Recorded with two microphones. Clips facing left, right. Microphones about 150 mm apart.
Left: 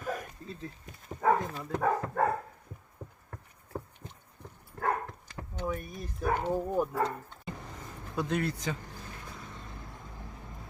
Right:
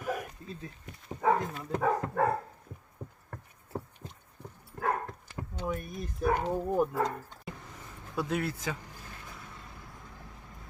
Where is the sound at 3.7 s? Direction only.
10° right (ahead or behind).